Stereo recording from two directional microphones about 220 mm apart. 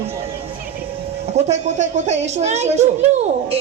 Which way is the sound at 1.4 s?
30° right (ahead or behind).